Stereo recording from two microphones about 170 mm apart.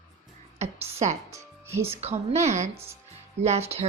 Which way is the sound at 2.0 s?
40° right (ahead or behind).